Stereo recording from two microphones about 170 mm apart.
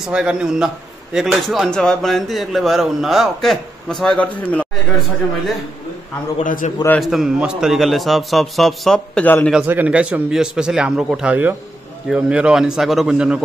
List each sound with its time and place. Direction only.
0.0 s speech: 5° right (ahead or behind)
6.3 s a man's voice: 50° left (ahead or behind)
7.0 s speech: 5° right (ahead or behind)
9.5 s speech: 10° right (ahead or behind)